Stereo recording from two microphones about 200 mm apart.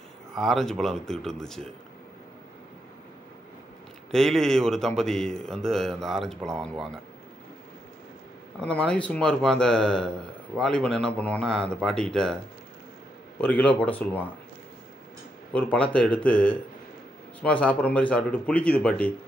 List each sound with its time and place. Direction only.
0.3 s speech: centre (ahead or behind)
4.1 s speech: centre (ahead or behind)
8.5 s speech: 5° left (ahead or behind)
13.4 s speech: 5° left (ahead or behind)
15.5 s speech: 5° left (ahead or behind)